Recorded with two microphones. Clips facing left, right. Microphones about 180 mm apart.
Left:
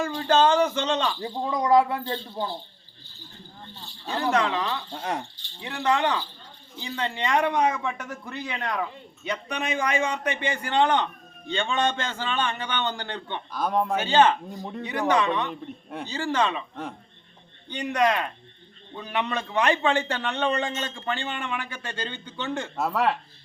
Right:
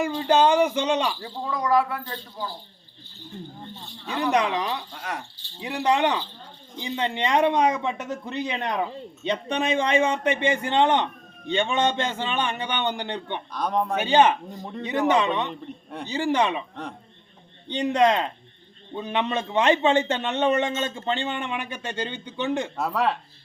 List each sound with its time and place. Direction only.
0.2 s speech: 15° right (ahead or behind)
1.2 s speech: 20° left (ahead or behind)
3.8 s speech: 35° left (ahead or behind)
4.3 s speech: 15° right (ahead or behind)
4.9 s speech: 25° left (ahead or behind)
5.5 s speech: 20° right (ahead or behind)
13.5 s speech: 5° left (ahead or behind)
13.9 s speech: 15° right (ahead or behind)
14.5 s speech: centre (ahead or behind)
14.8 s speech: 20° right (ahead or behind)
17.7 s speech: 25° right (ahead or behind)
22.8 s speech: centre (ahead or behind)